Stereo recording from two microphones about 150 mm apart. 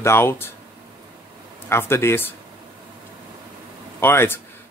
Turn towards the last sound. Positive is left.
turn(degrees=15)  # may be behind; listen again after turning